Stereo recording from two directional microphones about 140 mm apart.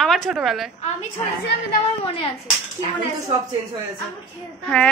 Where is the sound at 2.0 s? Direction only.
40° left (ahead or behind).